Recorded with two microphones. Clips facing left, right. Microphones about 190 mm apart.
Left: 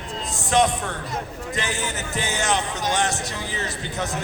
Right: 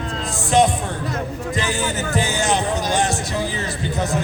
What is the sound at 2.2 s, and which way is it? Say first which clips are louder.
Speech: right 3 dB; 30° right (ahead or behind).